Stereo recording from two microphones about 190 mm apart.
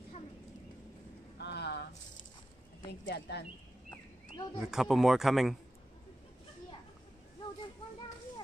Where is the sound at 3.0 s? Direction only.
65° left (ahead or behind).